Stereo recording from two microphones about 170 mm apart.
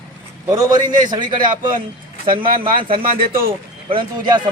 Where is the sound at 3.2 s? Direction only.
60° right (ahead or behind).